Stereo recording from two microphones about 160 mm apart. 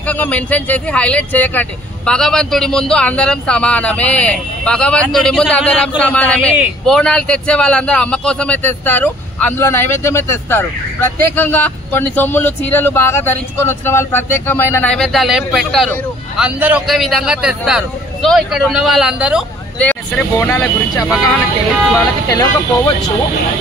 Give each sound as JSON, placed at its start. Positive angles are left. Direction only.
{"t": 0.0, "sound": "a man's voice", "side_deg": 10}
{"t": 19.8, "sound": "a man's voice", "side_deg": 10}
{"t": 22.3, "sound": "speech", "side_deg": 25}